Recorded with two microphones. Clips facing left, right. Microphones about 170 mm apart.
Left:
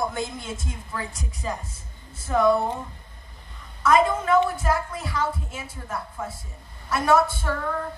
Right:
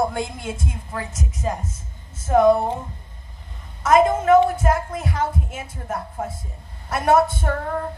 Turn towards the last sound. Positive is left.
turn(degrees=-55)  # may be behind; listen again after turning